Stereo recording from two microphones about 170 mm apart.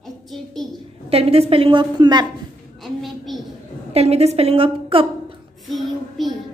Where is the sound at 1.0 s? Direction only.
35° right (ahead or behind).